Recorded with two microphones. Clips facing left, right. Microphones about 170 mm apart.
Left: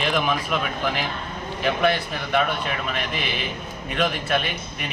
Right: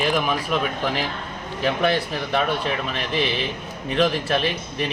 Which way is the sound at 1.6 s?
35° right (ahead or behind).